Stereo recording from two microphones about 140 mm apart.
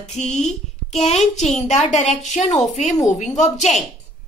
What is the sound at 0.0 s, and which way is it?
A woman's voice, 55° left (ahead or behind).